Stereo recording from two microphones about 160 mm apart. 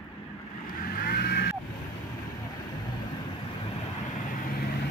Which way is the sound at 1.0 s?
75° left (ahead or behind).